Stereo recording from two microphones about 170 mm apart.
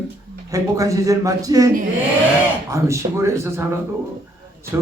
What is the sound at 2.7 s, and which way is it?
Speech, 15° right (ahead or behind).